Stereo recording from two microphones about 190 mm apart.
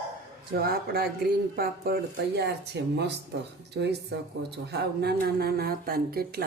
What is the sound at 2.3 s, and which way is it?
Speech, 60° right (ahead or behind).